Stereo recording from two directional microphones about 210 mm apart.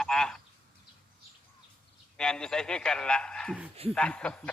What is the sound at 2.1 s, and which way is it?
Speech, 5° left (ahead or behind).